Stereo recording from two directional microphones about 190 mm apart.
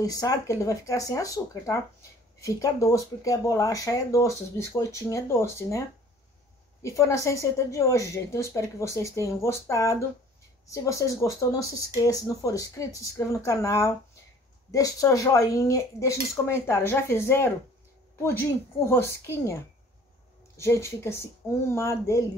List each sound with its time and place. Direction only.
0.0 s speech: 20° left (ahead or behind)